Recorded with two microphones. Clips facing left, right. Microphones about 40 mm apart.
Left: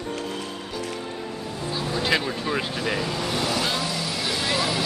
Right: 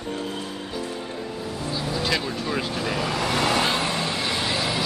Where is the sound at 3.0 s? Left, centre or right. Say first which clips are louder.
Right 3 dB; right; by 4.8 s centre.